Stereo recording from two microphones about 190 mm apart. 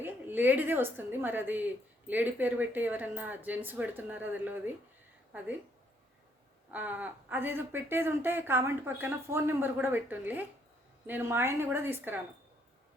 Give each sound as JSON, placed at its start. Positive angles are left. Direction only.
{"t": 0.0, "sound": "a woman's voice", "side_deg": -10}
{"t": 6.7, "sound": "a woman's voice", "side_deg": -10}